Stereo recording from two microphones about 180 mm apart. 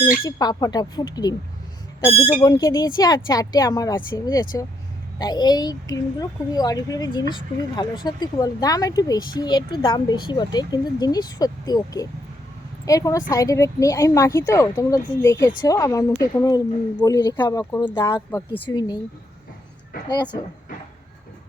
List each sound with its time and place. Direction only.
0.3 s a woman's voice: 20° left (ahead or behind)
2.4 s a woman's voice: 20° left (ahead or behind)